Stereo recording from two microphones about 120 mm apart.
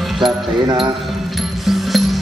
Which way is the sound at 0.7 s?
35° right (ahead or behind).